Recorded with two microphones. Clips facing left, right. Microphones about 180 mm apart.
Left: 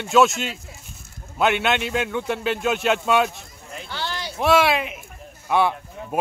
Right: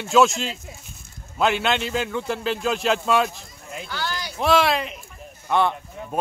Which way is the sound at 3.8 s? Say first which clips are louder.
Even; 25° left (ahead or behind).